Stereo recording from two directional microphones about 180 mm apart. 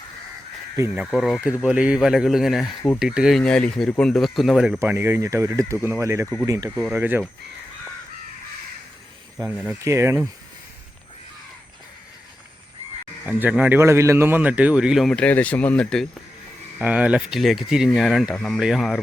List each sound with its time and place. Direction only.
1.0 s speech: centre (ahead or behind)
4.8 s a man's voice: 15° right (ahead or behind)
9.4 s a man's voice: 10° right (ahead or behind)
13.2 s a man's voice: 10° right (ahead or behind)